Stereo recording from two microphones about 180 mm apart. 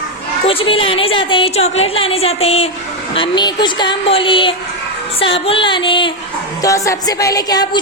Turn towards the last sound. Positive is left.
turn(degrees=20)  # may be behind; listen again after turning